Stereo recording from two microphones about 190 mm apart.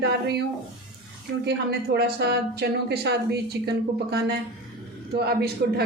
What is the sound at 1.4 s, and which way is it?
Speech, 60° right (ahead or behind).